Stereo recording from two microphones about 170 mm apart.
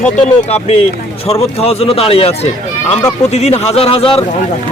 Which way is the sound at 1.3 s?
35° left (ahead or behind).